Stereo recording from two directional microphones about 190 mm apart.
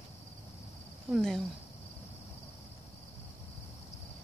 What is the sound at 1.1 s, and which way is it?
Speech, centre (ahead or behind).